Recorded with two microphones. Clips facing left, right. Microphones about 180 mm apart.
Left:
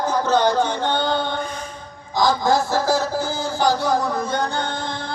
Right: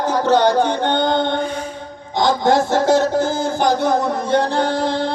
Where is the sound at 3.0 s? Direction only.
65° right (ahead or behind).